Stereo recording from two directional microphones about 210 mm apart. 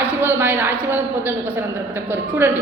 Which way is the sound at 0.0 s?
10° right (ahead or behind).